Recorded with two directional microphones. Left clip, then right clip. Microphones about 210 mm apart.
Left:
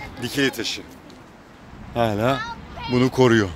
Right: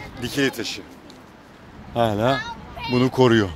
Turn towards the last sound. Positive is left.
turn(degrees=-10)  # may be behind; listen again after turning